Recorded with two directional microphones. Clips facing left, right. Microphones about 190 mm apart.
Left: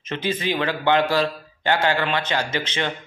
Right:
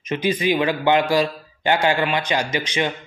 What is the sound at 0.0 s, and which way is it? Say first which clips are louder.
A man's voice: right 4 dB; 15° right (ahead or behind).